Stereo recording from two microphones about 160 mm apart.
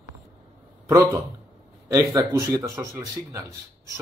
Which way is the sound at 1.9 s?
20° right (ahead or behind).